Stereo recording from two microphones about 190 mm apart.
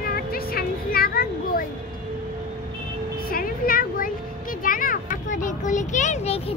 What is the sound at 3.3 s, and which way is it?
Children playing, 50° left (ahead or behind).